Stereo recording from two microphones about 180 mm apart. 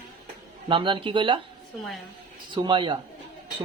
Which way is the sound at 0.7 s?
25° right (ahead or behind).